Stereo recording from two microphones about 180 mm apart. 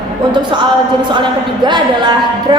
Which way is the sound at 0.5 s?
25° right (ahead or behind).